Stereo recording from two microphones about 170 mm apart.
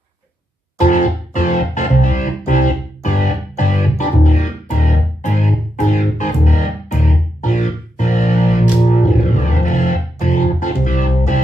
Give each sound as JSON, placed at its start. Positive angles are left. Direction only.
{"t": 0.7, "sound": "music", "side_deg": 50}